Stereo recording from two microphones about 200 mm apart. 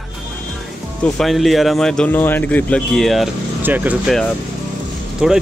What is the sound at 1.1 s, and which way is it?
Speech, centre (ahead or behind).